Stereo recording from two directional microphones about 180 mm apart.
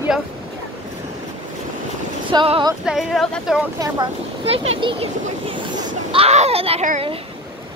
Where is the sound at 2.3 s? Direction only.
25° right (ahead or behind).